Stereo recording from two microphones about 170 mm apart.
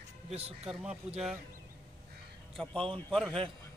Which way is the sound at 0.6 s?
5° right (ahead or behind).